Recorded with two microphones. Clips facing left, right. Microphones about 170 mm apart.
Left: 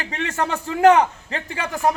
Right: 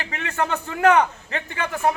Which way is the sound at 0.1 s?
35° left (ahead or behind).